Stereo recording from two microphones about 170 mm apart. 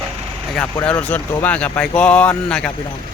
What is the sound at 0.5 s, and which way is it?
Speech, 5° left (ahead or behind).